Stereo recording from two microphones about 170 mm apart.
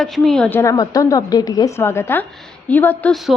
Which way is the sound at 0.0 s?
5° left (ahead or behind).